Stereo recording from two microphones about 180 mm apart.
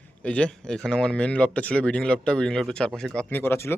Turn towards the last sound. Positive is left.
turn(degrees=10)  # may be behind; listen again after turning